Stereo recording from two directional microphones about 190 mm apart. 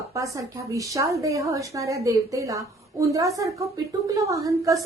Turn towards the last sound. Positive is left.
turn(degrees=-15)  # may be behind; listen again after turning